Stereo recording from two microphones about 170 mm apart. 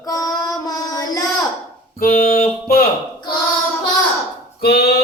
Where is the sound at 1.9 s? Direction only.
60° left (ahead or behind).